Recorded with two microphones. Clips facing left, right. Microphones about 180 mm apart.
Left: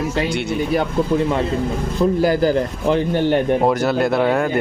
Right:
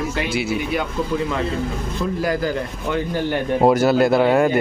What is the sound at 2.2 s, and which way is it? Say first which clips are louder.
A man's voice: left 4 dB; 30° left (ahead or behind).